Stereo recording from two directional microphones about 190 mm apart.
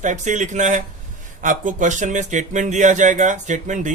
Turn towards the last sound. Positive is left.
turn(degrees=-40)  # may be behind; listen again after turning